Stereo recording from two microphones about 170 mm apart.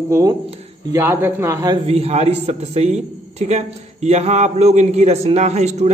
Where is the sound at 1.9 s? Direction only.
35° right (ahead or behind).